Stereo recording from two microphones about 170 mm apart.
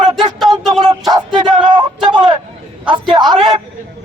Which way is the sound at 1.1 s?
25° right (ahead or behind).